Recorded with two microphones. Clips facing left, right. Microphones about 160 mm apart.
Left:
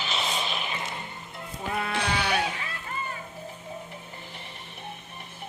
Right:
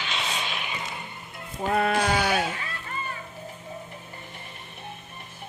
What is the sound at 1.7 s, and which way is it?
Sheep, 60° right (ahead or behind).